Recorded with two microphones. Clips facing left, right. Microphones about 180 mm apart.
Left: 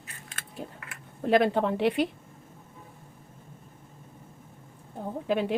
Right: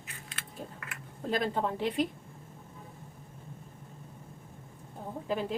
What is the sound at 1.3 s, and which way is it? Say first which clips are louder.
Speech: left 8 dB; 70° left (ahead or behind).